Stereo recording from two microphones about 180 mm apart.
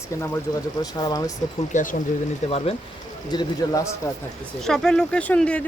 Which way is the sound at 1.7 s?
45° left (ahead or behind).